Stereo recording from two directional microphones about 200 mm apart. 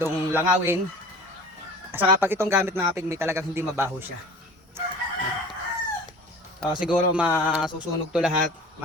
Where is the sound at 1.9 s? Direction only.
10° right (ahead or behind).